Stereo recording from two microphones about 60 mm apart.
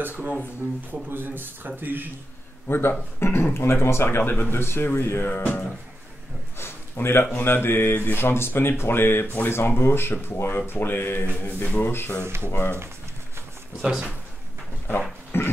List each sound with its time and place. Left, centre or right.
0.0 s speech: right
2.7 s speech: left
5.2 s music: left
6.6 s a sound: left
7.3 s speech: left
13.8 s speech: centre
15.3 s speech: left